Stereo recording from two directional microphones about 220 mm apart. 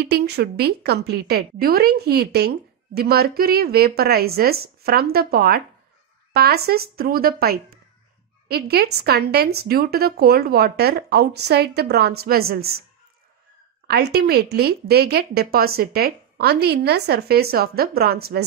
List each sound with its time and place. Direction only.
0.0 s a woman's voice: 50° right (ahead or behind)
13.8 s a woman's voice: 45° right (ahead or behind)